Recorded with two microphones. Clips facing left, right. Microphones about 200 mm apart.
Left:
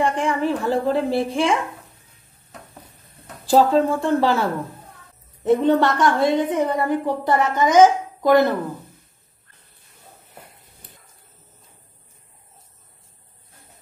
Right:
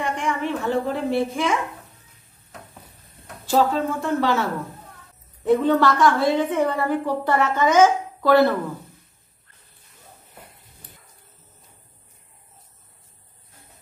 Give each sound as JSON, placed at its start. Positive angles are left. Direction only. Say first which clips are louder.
{"t": 0.0, "sound": "a woman's voice", "louder": "left 4 dB", "side_deg": 35}
{"t": 3.4, "sound": "a woman's voice", "louder": "left 4 dB", "side_deg": 30}